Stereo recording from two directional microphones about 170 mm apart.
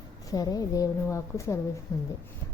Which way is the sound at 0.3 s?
20° left (ahead or behind).